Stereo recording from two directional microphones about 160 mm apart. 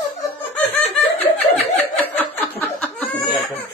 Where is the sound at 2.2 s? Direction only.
10° left (ahead or behind).